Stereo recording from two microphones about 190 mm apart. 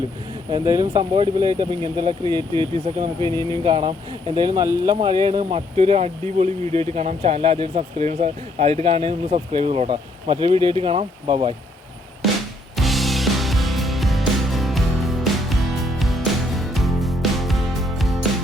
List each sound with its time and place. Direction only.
0.5 s speech: 15° right (ahead or behind)
12.7 s music: centre (ahead or behind)